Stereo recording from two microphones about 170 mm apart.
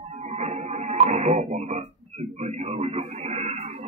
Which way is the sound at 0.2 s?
40° right (ahead or behind).